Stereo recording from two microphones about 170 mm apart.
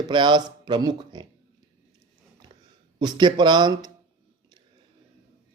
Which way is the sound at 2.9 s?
25° right (ahead or behind).